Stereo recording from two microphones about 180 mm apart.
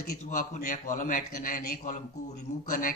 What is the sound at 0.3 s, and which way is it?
Speech, 45° left (ahead or behind).